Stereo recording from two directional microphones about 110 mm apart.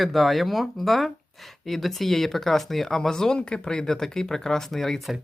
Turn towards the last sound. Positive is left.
turn(degrees=0)  # may be behind; listen again after turning